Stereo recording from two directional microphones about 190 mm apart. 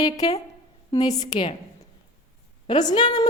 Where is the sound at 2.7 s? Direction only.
20° left (ahead or behind).